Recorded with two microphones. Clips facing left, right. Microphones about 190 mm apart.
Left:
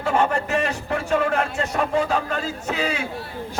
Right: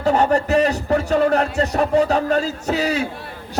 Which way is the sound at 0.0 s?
40° right (ahead or behind).